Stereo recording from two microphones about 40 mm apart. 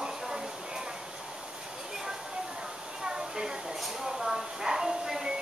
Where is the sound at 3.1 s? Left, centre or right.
Centre.